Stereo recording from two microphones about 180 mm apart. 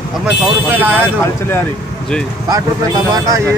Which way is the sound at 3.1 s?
20° right (ahead or behind).